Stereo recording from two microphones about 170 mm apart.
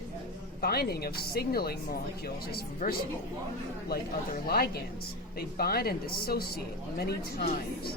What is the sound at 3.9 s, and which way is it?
Speech, 65° left (ahead or behind).